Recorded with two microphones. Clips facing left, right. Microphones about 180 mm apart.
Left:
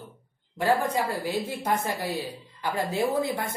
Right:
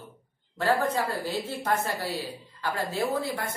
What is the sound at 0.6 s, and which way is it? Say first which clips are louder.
Speech: left 1 dB; 15° left (ahead or behind).